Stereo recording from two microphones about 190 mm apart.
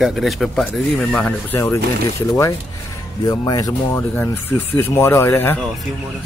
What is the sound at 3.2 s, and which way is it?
Speech, 20° left (ahead or behind).